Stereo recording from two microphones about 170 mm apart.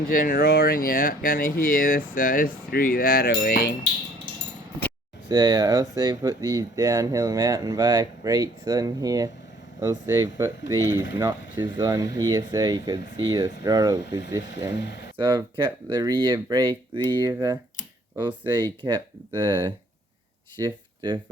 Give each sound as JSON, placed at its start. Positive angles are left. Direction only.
{"t": 0.1, "sound": "speech", "side_deg": 55}
{"t": 5.3, "sound": "speech", "side_deg": -25}
{"t": 14.8, "sound": "speech", "side_deg": 80}
{"t": 15.2, "sound": "speech", "side_deg": -25}
{"t": 18.8, "sound": "speech", "side_deg": -25}